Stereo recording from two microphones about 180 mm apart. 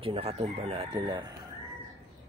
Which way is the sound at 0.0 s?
30° right (ahead or behind).